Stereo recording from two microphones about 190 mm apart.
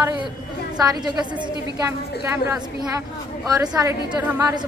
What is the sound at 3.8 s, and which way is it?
Speech, 10° right (ahead or behind).